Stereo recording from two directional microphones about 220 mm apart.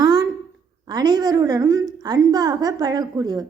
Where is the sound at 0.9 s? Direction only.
20° right (ahead or behind).